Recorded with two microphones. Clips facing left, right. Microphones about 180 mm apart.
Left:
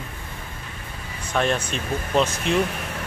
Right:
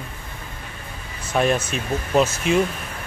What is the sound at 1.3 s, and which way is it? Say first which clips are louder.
Speech: right 3 dB; 5° right (ahead or behind).